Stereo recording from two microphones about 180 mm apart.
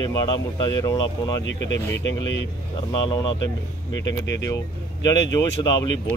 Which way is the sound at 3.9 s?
85° left.